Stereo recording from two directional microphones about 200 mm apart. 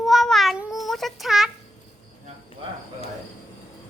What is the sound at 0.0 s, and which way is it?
Child singing, centre (ahead or behind).